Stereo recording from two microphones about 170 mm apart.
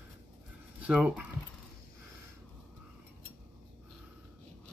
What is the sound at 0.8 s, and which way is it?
Speech, 5° right (ahead or behind).